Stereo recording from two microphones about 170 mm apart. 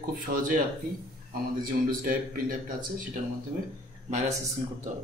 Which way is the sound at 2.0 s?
55° right (ahead or behind).